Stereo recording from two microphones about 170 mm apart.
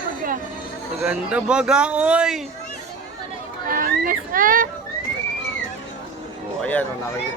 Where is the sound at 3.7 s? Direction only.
55° right (ahead or behind).